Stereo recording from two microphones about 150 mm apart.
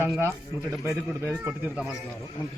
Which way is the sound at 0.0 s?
15° right (ahead or behind).